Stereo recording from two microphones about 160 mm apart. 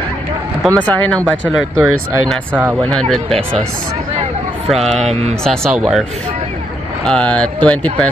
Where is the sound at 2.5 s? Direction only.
10° right (ahead or behind).